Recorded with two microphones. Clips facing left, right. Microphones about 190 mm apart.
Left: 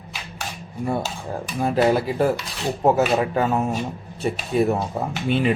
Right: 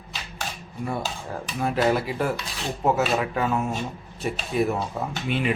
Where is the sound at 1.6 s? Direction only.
30° left (ahead or behind).